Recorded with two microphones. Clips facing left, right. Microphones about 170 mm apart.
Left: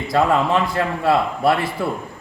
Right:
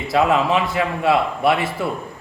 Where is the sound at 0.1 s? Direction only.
5° right (ahead or behind).